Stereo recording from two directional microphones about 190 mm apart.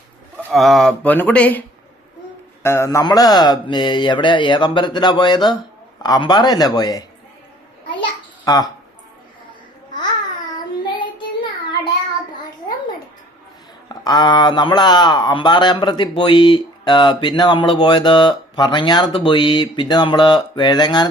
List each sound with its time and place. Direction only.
0.5 s speech: centre (ahead or behind)
2.6 s speech: 15° left (ahead or behind)
8.4 s speech: 20° left (ahead or behind)
10.5 s child singing: 25° left (ahead or behind)
13.8 s speech: 20° left (ahead or behind)